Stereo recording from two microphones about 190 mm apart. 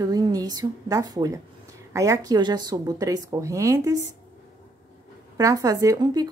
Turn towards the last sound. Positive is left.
turn(degrees=-20)  # may be behind; listen again after turning